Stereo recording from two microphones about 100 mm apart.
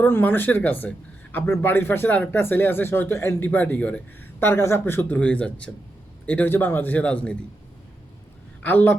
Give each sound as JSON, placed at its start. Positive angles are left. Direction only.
{"t": 0.0, "sound": "speech", "side_deg": 20}
{"t": 4.4, "sound": "speech", "side_deg": 25}
{"t": 8.6, "sound": "speech", "side_deg": 15}